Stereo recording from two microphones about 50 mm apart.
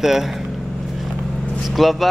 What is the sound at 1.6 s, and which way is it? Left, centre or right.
Speech, centre.